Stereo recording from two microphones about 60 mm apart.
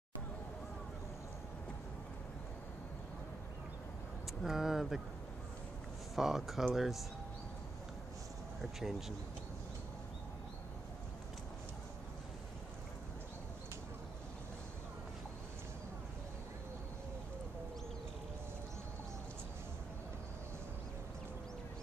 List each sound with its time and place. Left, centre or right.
4.4 s speech: centre
6.1 s speech: centre
8.5 s speech: centre